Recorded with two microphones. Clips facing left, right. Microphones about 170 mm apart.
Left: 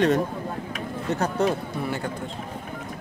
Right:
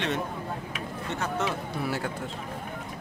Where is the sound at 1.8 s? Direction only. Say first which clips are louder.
Left 1 dB; 5° right (ahead or behind).